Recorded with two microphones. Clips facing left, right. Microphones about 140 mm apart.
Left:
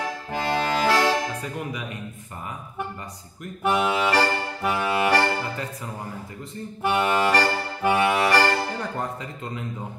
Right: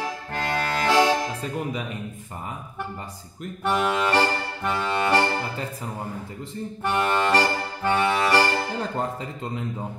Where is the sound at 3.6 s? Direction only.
5° left (ahead or behind).